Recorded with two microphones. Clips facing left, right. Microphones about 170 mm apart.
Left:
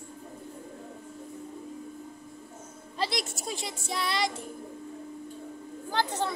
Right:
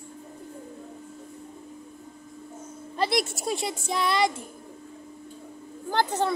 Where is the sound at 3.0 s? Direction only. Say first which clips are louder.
Right 6 dB; 60° right (ahead or behind).